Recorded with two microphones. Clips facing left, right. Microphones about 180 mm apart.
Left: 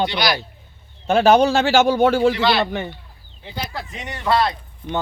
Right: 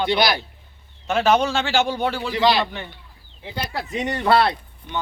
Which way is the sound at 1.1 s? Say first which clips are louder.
Left 5 dB; 35° left (ahead or behind).